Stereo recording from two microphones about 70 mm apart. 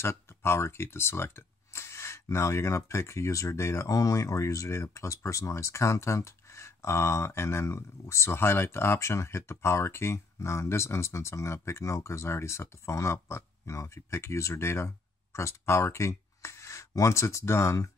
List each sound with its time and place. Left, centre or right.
0.0 s speech: left